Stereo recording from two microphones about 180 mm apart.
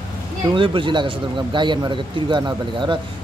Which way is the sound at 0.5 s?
30° right (ahead or behind).